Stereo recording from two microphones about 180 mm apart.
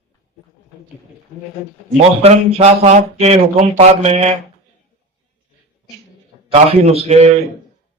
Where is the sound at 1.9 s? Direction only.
35° right (ahead or behind).